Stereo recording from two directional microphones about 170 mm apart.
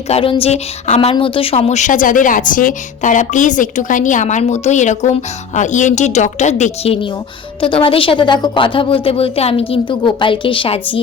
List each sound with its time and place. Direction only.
0.1 s a woman's voice: 35° left (ahead or behind)